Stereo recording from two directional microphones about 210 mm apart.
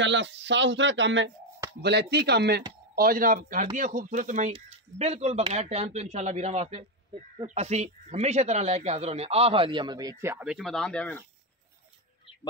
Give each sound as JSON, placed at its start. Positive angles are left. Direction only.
{"t": 0.0, "sound": "a man's voice", "side_deg": -60}